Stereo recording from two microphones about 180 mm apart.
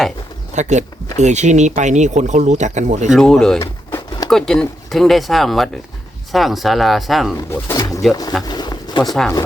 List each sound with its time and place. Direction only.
0.5 s speech: 40° right (ahead or behind)
3.1 s speech: centre (ahead or behind)
3.6 s a sound: 20° left (ahead or behind)
4.3 s speech: 5° left (ahead or behind)
7.5 s speech: 20° left (ahead or behind)
8.4 s a sound: 25° left (ahead or behind)